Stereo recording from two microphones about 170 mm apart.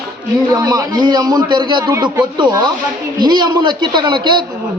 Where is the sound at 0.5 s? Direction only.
20° right (ahead or behind).